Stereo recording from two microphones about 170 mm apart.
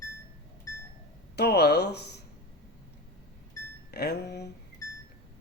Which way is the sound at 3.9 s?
70° left (ahead or behind).